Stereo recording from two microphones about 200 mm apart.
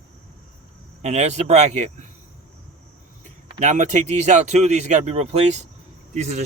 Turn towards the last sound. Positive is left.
turn(degrees=-35)  # may be behind; listen again after turning